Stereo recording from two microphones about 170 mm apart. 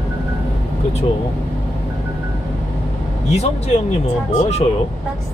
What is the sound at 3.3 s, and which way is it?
Speech, 40° left (ahead or behind).